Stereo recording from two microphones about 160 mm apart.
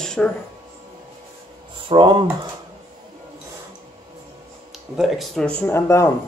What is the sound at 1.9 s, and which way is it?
Speech, 30° right (ahead or behind).